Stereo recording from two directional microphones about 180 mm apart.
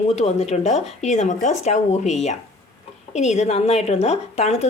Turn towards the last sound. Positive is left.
turn(degrees=35)  # may be behind; listen again after turning